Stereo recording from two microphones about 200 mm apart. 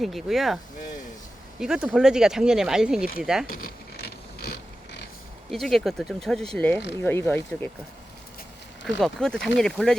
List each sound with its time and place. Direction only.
0.0 s speech: centre (ahead or behind)
3.5 s a sound: 50° left (ahead or behind)
5.5 s speech: centre (ahead or behind)
9.0 s speech: centre (ahead or behind)